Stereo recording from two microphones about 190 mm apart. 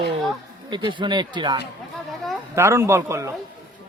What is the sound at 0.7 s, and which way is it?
Speech, 25° right (ahead or behind).